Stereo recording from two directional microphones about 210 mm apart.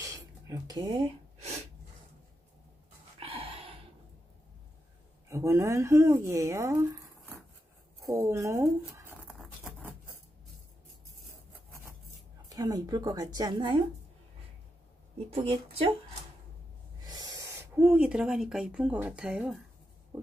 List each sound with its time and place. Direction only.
0.0 s a sound: 15° right (ahead or behind)
0.8 s gasp: 30° right (ahead or behind)
3.2 s a sound: 25° right (ahead or behind)
5.3 s speech: 15° right (ahead or behind)
8.1 s patter: 15° right (ahead or behind)
12.4 s speech: 15° right (ahead or behind)
15.1 s speech: 25° right (ahead or behind)
17.0 s speech: 20° right (ahead or behind)